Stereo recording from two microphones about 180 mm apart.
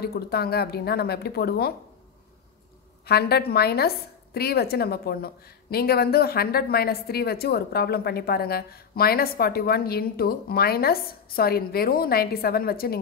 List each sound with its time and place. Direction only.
0.0 s a woman's voice: 60° left (ahead or behind)
3.1 s a woman's voice: 60° left (ahead or behind)